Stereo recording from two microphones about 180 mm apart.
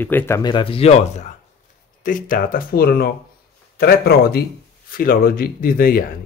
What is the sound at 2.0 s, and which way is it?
Speech, 50° left (ahead or behind).